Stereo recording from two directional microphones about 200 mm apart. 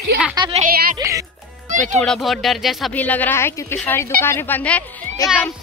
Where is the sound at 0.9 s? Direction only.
15° right (ahead or behind).